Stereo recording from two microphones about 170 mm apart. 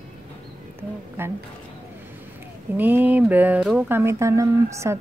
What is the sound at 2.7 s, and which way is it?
Speech, 10° right (ahead or behind).